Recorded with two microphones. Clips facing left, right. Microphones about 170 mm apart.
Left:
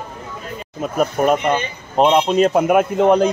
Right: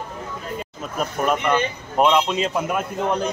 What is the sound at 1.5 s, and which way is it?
Speech, 35° left (ahead or behind).